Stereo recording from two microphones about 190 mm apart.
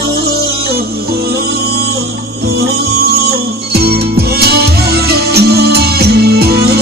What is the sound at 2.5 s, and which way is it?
Music, 55° right (ahead or behind).